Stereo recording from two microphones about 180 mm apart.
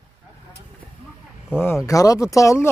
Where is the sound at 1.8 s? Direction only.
20° left (ahead or behind).